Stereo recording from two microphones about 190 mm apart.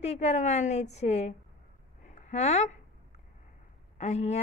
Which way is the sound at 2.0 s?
40° left (ahead or behind).